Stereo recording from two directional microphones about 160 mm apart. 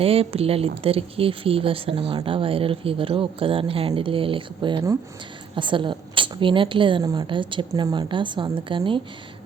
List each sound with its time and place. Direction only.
0.0 s speech: 35° right (ahead or behind)